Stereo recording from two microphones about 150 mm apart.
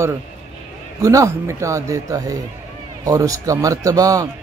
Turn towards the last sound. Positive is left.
turn(degrees=-25)  # may be behind; listen again after turning